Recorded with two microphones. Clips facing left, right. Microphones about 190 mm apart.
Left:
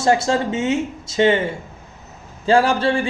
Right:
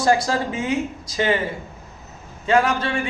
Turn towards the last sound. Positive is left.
turn(degrees=30)  # may be behind; listen again after turning